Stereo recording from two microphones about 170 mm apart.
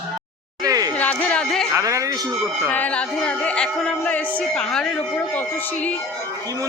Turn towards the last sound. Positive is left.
turn(degrees=10)  # may be behind; listen again after turning